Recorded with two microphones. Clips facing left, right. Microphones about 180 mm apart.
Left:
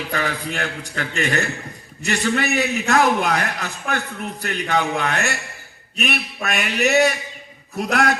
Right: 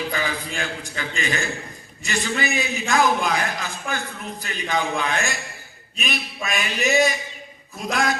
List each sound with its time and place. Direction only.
0.1 s a man's voice: 65° left (ahead or behind)